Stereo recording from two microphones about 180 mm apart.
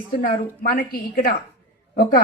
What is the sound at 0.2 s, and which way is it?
A man's voice, 50° left (ahead or behind).